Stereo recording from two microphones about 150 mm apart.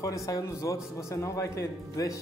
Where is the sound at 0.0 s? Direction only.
20° left (ahead or behind).